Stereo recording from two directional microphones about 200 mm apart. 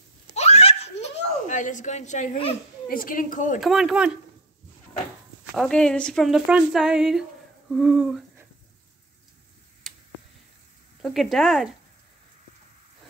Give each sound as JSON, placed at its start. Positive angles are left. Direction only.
{"t": 0.3, "sound": "giggle", "side_deg": 30}
{"t": 2.9, "sound": "a woman's voice", "side_deg": 45}
{"t": 3.6, "sound": "a woman's voice", "side_deg": -5}
{"t": 5.5, "sound": "a woman's voice", "side_deg": 5}
{"t": 11.0, "sound": "a woman's voice", "side_deg": 0}